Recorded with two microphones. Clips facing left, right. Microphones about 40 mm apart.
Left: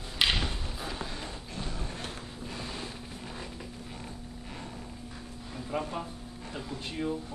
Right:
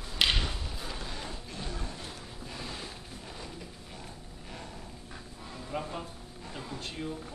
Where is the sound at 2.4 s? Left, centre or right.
Centre.